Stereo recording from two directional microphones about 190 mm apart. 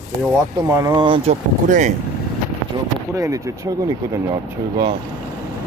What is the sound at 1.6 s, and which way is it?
Speech, 40° right (ahead or behind).